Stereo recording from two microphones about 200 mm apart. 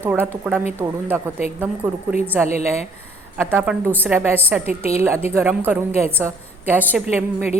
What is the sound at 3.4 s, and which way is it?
A woman's voice, 10° right (ahead or behind).